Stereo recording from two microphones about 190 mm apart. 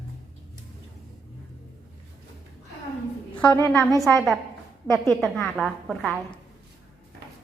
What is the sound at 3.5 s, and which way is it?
Speech, 15° left (ahead or behind).